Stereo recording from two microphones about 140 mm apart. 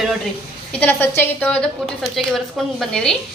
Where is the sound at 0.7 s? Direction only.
10° left (ahead or behind).